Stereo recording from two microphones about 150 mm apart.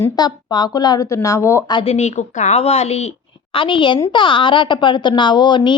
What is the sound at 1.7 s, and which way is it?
Speech, 30° left (ahead or behind).